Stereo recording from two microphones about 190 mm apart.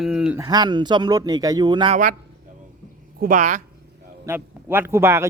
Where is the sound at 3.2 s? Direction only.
45° right (ahead or behind).